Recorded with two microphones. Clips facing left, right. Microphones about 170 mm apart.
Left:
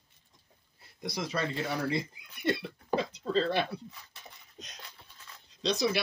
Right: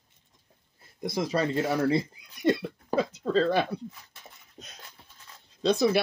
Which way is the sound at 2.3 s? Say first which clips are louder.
Right 6 dB; 45° right (ahead or behind).